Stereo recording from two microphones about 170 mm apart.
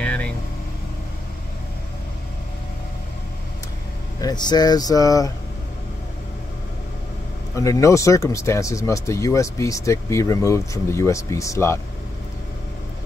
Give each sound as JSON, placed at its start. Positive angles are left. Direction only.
{"t": 0.0, "sound": "vehicle", "side_deg": 5}
{"t": 4.2, "sound": "speech", "side_deg": 25}
{"t": 7.5, "sound": "speech", "side_deg": 20}